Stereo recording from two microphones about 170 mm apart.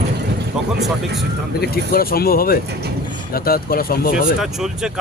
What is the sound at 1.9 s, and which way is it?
Speech, 60° left (ahead or behind).